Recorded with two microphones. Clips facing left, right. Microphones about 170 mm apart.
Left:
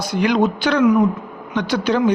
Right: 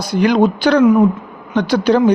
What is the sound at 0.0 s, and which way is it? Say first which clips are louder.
Speech: right 4 dB; 35° right (ahead or behind).